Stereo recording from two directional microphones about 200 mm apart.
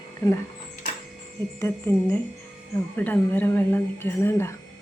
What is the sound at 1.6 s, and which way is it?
Speech, 15° left (ahead or behind).